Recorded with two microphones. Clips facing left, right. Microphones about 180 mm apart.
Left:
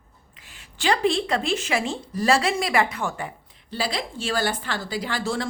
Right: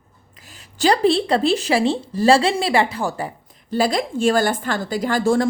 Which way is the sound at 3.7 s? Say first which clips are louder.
Right 9 dB; 45° right (ahead or behind).